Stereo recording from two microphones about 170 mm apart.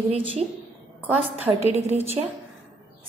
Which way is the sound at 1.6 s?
40° right (ahead or behind).